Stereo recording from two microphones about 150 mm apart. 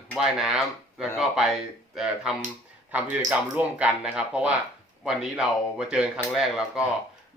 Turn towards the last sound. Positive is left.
turn(degrees=0)  # may be behind; listen again after turning